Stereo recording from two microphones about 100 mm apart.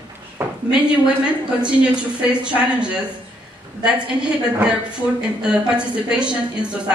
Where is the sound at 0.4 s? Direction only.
25° right (ahead or behind).